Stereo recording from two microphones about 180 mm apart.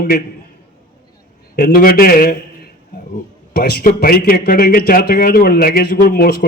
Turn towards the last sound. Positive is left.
turn(degrees=60)  # may be behind; listen again after turning